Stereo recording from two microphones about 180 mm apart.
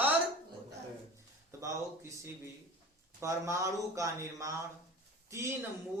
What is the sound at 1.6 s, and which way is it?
Speech, 15° right (ahead or behind).